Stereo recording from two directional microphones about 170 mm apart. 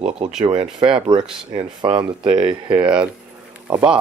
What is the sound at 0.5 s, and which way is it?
Speech, 30° right (ahead or behind).